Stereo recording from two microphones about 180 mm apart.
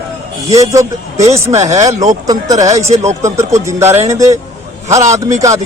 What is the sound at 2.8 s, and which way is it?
Speech, 35° right (ahead or behind).